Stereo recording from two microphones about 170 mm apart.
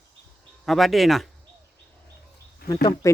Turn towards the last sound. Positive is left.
turn(degrees=25)  # may be behind; listen again after turning